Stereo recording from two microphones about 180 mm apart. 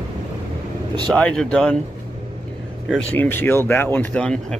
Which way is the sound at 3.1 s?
10° left (ahead or behind).